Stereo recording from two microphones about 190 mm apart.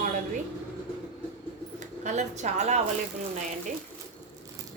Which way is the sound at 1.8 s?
40° right (ahead or behind).